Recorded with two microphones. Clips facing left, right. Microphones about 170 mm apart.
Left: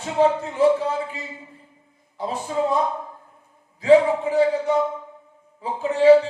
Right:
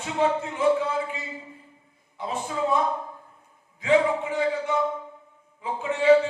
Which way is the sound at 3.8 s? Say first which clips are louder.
Left 6 dB; 35° left (ahead or behind).